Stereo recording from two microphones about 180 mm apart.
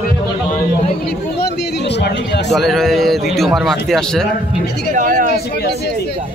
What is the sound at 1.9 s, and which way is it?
Speech, 70° left (ahead or behind).